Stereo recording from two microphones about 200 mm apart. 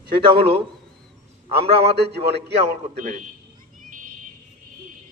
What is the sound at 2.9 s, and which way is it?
Mantra, 35° right (ahead or behind).